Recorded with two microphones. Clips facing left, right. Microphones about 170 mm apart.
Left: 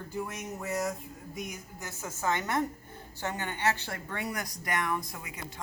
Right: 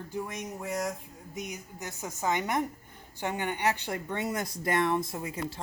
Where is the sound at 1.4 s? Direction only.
20° right (ahead or behind).